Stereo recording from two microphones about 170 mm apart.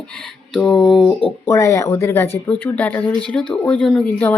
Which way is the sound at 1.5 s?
15° left (ahead or behind).